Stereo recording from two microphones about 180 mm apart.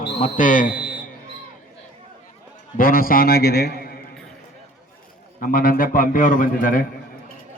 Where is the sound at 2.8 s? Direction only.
50° left (ahead or behind).